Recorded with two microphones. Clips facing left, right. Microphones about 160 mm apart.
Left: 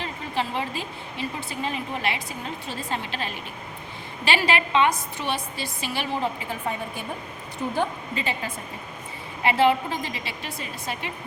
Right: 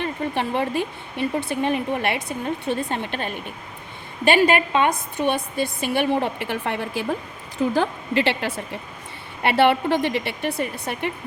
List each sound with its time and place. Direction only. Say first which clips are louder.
0.0 s a woman's voice: right 4 dB; 60° right (ahead or behind); by 8.8 s 80° right
9.4 s a woman's voice: right 3 dB; 70° right (ahead or behind)